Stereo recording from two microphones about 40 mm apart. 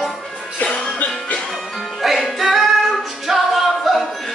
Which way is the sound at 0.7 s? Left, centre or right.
Left.